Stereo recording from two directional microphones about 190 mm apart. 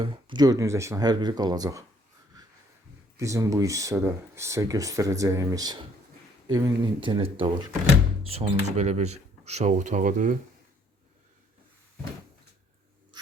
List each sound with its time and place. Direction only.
0.0 s speech: 25° right (ahead or behind)
3.2 s speech: 15° right (ahead or behind); by 10.3 s 45° right (ahead or behind)